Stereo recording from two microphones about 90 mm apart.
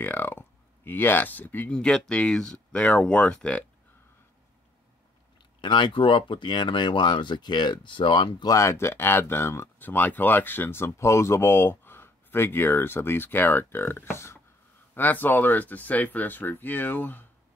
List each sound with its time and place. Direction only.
0.0 s speech: 25° left (ahead or behind)
5.6 s speech: 60° left (ahead or behind)
8.5 s speech: 35° left (ahead or behind)